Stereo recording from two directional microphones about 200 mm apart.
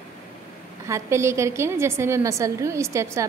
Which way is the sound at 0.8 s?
15° right (ahead or behind).